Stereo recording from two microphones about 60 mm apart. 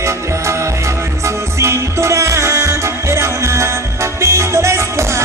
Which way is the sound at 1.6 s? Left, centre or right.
Right.